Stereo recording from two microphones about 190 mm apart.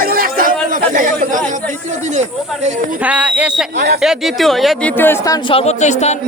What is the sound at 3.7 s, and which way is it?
Speech, 55° right (ahead or behind).